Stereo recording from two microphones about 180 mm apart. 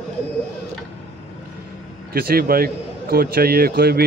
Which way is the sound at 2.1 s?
55° right (ahead or behind).